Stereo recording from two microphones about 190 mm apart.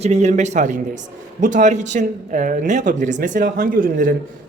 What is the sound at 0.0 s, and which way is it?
Speech, 35° right (ahead or behind).